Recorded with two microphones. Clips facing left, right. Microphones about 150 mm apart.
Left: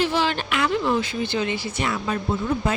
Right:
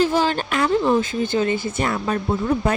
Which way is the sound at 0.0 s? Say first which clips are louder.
Right 4 dB; 45° right (ahead or behind).